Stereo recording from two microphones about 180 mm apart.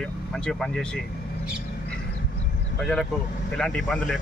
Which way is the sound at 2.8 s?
Centre (ahead or behind).